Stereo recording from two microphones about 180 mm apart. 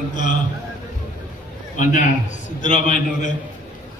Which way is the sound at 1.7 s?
45° left (ahead or behind).